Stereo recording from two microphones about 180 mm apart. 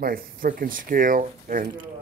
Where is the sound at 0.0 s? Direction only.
55° right (ahead or behind).